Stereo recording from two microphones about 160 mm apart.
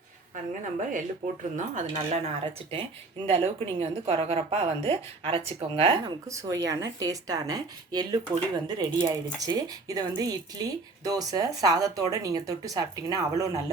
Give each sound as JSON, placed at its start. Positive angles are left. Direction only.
{"t": 1.5, "sound": "a woman's voice", "side_deg": -45}
{"t": 6.3, "sound": "speech", "side_deg": -20}